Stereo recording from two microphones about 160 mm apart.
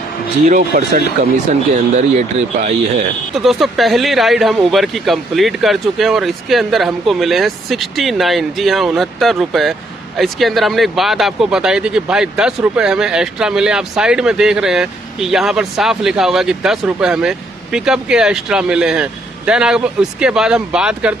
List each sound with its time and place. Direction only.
0.7 s speech: 70° right (ahead or behind)
2.0 s speech: 50° right (ahead or behind)
3.3 s speech: centre (ahead or behind)